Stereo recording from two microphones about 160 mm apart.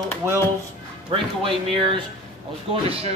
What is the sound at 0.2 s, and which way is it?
Speech, 15° right (ahead or behind).